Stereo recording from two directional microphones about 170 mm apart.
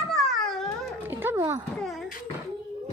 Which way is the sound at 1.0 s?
10° right (ahead or behind).